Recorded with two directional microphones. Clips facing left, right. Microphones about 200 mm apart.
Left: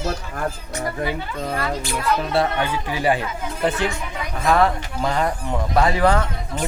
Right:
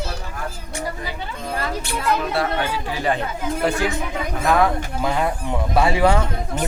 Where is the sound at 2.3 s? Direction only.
25° left (ahead or behind).